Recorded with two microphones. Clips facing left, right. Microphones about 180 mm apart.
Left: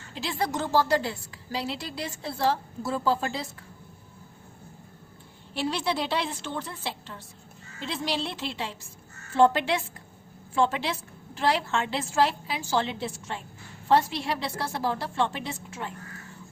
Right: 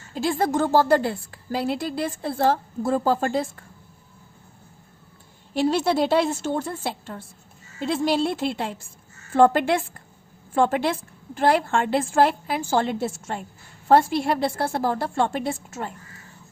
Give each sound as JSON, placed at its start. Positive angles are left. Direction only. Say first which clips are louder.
{"t": 0.1, "sound": "a woman's voice", "louder": "right 7 dB", "side_deg": -45}
{"t": 5.5, "sound": "a woman's voice", "louder": "right 8 dB", "side_deg": -45}